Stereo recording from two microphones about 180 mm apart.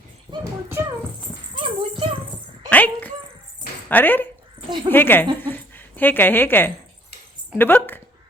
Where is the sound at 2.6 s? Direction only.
10° left (ahead or behind).